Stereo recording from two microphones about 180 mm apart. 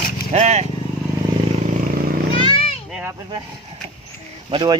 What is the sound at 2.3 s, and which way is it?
Children playing, 30° left (ahead or behind).